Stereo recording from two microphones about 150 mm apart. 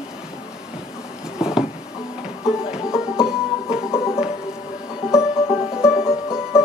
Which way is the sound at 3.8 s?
15° left (ahead or behind).